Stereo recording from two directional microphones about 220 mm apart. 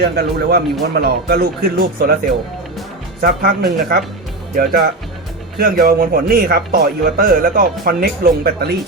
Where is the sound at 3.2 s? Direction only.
45° right (ahead or behind).